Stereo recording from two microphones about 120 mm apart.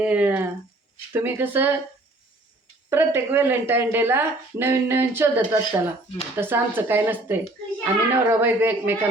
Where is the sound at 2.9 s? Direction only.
20° right (ahead or behind).